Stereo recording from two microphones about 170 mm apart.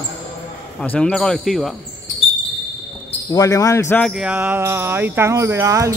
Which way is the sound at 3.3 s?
20° left (ahead or behind).